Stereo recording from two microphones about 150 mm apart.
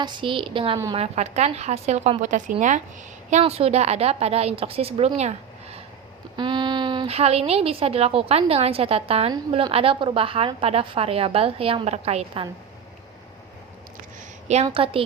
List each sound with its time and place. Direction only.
0.0 s a woman's voice: 30° right (ahead or behind)
0.9 s a woman's voice: 45° right (ahead or behind)
6.3 s a woman's voice: 30° right (ahead or behind)
14.4 s a woman's voice: 50° right (ahead or behind)